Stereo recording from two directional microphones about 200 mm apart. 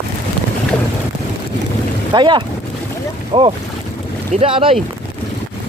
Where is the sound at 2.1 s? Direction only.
20° right (ahead or behind).